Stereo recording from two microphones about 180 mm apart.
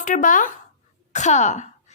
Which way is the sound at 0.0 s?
45° left (ahead or behind).